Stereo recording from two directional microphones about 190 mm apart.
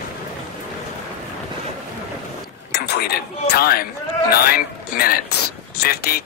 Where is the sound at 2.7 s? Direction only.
60° left (ahead or behind).